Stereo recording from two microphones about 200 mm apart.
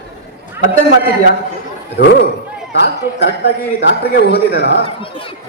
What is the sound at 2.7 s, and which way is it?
A man's voice, 60° left (ahead or behind).